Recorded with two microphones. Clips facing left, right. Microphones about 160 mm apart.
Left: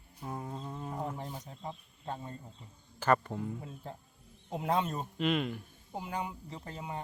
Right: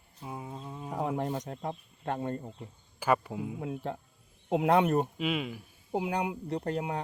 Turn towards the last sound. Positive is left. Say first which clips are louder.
# right 9 dB
turn(degrees=-70)  # may be behind; listen again after turning